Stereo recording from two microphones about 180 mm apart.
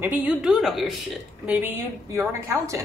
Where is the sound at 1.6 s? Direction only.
15° right (ahead or behind).